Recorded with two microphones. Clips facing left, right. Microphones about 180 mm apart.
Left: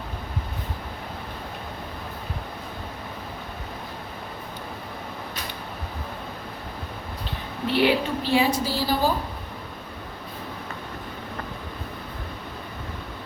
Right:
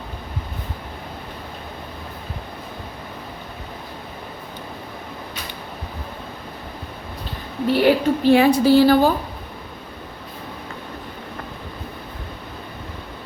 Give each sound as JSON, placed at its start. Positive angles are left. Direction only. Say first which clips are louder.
{"t": 7.7, "sound": "a woman's voice", "louder": "right 5 dB", "side_deg": -50}